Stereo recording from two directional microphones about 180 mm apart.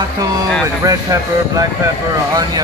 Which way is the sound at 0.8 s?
20° right (ahead or behind).